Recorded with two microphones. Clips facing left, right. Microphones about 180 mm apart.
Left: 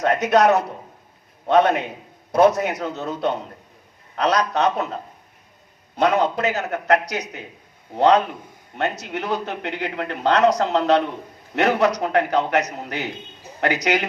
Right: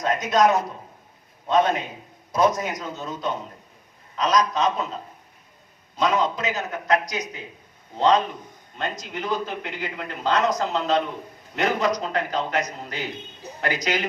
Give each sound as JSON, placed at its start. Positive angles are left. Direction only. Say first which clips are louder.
{"t": 0.0, "sound": "a man's voice", "louder": "left 3 dB", "side_deg": 65}
{"t": 6.0, "sound": "a man's voice", "louder": "left 4 dB", "side_deg": 65}